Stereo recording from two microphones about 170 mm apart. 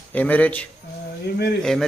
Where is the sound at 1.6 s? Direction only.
5° left (ahead or behind).